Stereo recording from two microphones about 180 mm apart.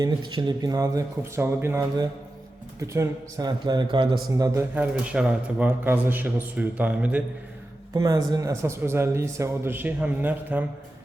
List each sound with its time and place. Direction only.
0.0 s speech: 25° right (ahead or behind)
4.7 s speech: 10° right (ahead or behind)
7.9 s speech: 20° right (ahead or behind)